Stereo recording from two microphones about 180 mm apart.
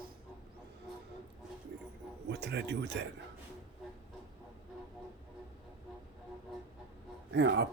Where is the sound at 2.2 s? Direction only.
70° right (ahead or behind).